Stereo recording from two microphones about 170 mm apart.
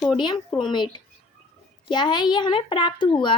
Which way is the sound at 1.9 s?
25° left (ahead or behind).